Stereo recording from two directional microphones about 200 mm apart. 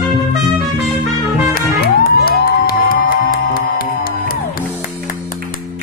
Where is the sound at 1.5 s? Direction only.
50° left (ahead or behind).